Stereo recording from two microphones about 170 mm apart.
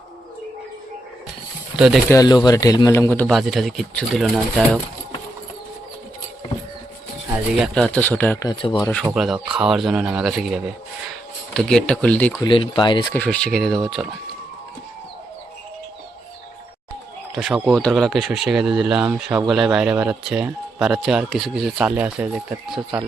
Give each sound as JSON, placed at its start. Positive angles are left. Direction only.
{"t": 1.7, "sound": "speech", "side_deg": -5}
{"t": 2.0, "sound": "a man's voice", "side_deg": 20}
{"t": 3.2, "sound": "speech", "side_deg": 0}
{"t": 7.8, "sound": "speech", "side_deg": 5}
{"t": 8.4, "sound": "a man's voice", "side_deg": 25}
{"t": 9.1, "sound": "speech", "side_deg": -5}
{"t": 12.4, "sound": "a man's voice", "side_deg": 30}
{"t": 13.1, "sound": "speech", "side_deg": 5}
{"t": 17.3, "sound": "speech", "side_deg": 0}